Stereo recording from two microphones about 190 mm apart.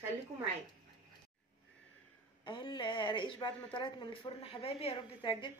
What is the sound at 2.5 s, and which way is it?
Speech, 25° left (ahead or behind).